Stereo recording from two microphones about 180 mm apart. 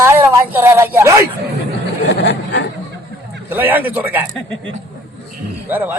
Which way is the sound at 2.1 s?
80° left.